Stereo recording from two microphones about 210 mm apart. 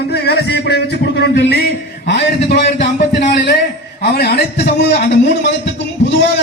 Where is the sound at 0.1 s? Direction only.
55° left (ahead or behind).